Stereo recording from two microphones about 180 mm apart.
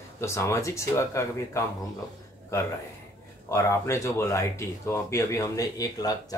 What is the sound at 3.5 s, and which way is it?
Speech, 15° left (ahead or behind).